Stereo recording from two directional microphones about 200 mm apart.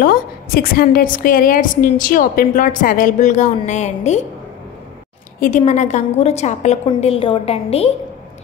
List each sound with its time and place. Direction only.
0.0 s a woman's voice: 50° left (ahead or behind)
5.6 s a woman's voice: 35° left (ahead or behind)